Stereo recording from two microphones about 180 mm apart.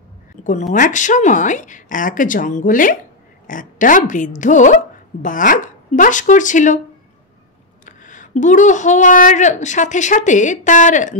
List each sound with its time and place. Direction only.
0.4 s speech: 45° left (ahead or behind)
7.8 s speech: 45° left (ahead or behind)